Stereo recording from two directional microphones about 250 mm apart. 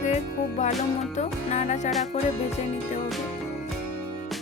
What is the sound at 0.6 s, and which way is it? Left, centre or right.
Music, left.